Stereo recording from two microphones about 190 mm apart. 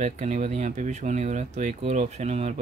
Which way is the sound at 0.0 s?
40° right (ahead or behind).